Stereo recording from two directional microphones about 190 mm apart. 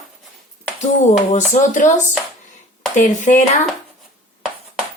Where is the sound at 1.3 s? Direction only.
40° left (ahead or behind).